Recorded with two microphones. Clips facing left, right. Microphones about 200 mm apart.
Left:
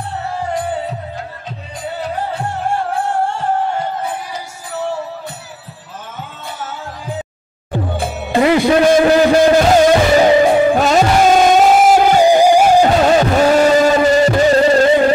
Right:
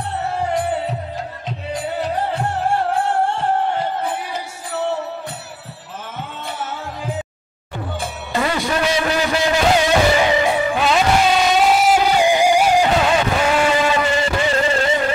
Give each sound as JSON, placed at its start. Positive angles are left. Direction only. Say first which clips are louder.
{"t": 8.6, "sound": "music", "louder": "left 9 dB", "side_deg": 50}